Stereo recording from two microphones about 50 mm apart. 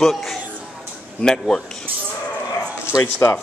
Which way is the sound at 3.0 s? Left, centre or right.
Left.